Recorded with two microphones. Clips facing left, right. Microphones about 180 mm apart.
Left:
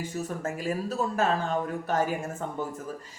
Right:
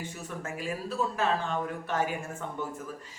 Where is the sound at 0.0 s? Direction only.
40° left (ahead or behind).